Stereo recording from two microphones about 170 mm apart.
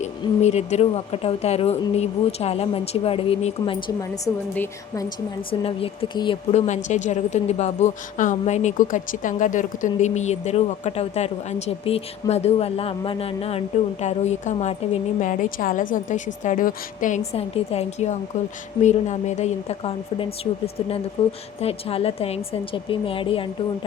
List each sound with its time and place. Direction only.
0.0 s a woman's voice: 40° left (ahead or behind)
4.5 s a woman's voice: 10° left (ahead or behind)
5.0 s a woman's voice: 30° left (ahead or behind)
6.7 s a woman's voice: 45° left (ahead or behind)
17.3 s a woman's voice: 35° left (ahead or behind)